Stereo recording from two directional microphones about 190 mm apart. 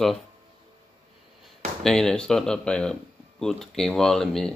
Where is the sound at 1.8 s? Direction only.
5° left (ahead or behind).